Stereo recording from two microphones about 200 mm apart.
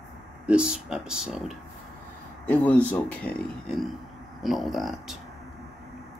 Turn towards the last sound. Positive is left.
turn(degrees=0)  # may be behind; listen again after turning